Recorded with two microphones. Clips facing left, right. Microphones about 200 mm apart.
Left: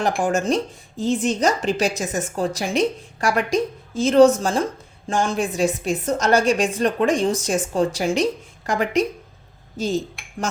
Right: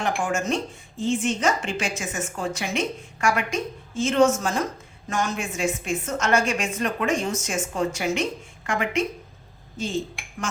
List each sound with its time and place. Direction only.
0.0 s speech: 35° left (ahead or behind)